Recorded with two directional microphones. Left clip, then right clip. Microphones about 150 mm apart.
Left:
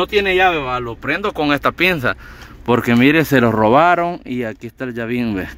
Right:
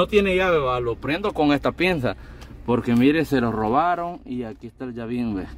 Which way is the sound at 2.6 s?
20° left (ahead or behind).